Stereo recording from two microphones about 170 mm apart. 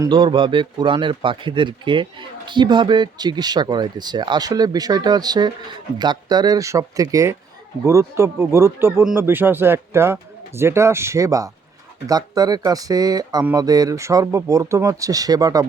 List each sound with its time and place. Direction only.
0.0 s a man's voice: 30° right (ahead or behind)